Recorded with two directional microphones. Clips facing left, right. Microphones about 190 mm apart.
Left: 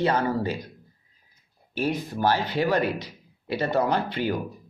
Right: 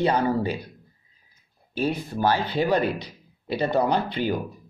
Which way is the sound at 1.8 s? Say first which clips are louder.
Right 1 dB; 10° right (ahead or behind).